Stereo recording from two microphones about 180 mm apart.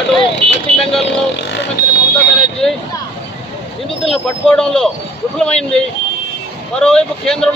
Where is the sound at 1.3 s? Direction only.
75° left (ahead or behind).